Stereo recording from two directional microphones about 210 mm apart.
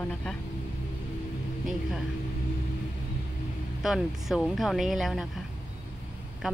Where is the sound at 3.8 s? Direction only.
Centre (ahead or behind).